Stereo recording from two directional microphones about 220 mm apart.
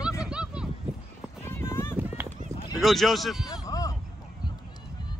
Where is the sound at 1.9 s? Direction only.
10° right (ahead or behind).